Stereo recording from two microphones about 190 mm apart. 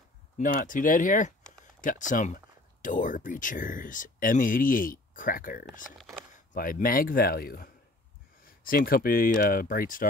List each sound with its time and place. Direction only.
0.4 s speech: 45° left (ahead or behind)